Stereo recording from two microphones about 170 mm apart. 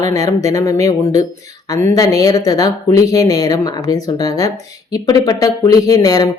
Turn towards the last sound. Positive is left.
turn(degrees=20)  # may be behind; listen again after turning